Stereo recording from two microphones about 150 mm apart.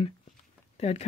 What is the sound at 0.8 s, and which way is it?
Speech, 45° left (ahead or behind).